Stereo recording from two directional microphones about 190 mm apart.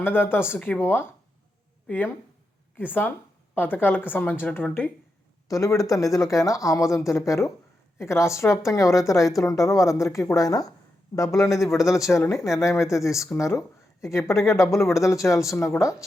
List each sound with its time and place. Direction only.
0.0 s a woman's voice: 10° left (ahead or behind)
2.7 s a woman's voice: 10° left (ahead or behind)